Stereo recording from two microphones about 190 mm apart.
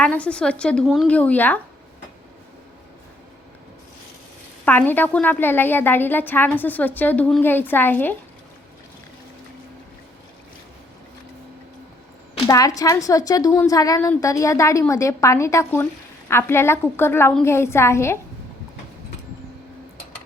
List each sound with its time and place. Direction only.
0.0 s a woman's voice: 5° left (ahead or behind)
4.6 s a woman's voice: 10° left (ahead or behind)
12.5 s a woman's voice: 20° left (ahead or behind)